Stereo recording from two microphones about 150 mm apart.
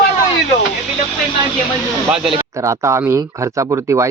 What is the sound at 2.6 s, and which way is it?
Speech, 20° right (ahead or behind).